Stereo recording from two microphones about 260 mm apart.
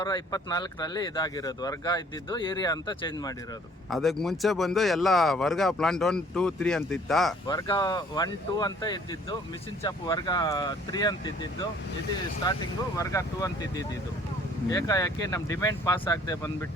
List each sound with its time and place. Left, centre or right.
0.0 s speech: centre
3.8 s speech: centre
7.4 s speech: centre
13.0 s speech: centre